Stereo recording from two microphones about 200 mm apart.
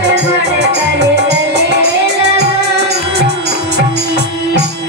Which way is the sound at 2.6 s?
55° right (ahead or behind).